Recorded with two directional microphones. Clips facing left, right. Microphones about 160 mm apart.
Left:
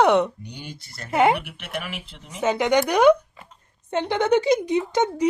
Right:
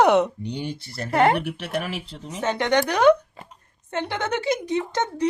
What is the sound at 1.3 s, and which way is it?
Speech, 35° right (ahead or behind).